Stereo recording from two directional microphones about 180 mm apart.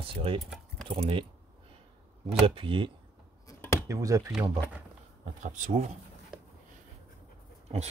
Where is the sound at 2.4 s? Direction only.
30° right (ahead or behind).